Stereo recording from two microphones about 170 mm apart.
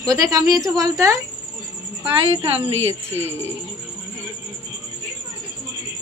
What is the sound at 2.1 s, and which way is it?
Speech, 30° right (ahead or behind).